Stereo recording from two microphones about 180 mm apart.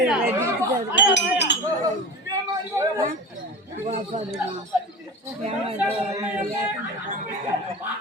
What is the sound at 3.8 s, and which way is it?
Speech, 40° right (ahead or behind).